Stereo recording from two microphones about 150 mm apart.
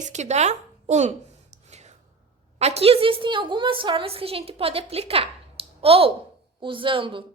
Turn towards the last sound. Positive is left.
turn(degrees=-35)  # may be behind; listen again after turning